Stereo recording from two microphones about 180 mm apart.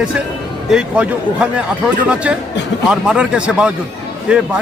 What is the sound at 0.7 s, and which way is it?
Speech, 5° right (ahead or behind).